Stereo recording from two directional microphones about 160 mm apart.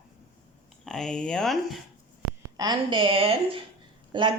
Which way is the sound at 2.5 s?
30° right (ahead or behind).